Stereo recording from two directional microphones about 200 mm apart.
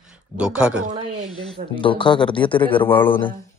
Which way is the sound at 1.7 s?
25° left (ahead or behind).